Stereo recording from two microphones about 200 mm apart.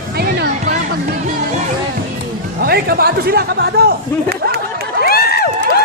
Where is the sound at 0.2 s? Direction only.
55° right (ahead or behind).